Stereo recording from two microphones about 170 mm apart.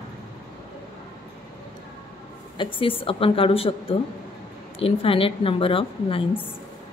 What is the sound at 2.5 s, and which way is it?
A woman's voice, 30° left (ahead or behind).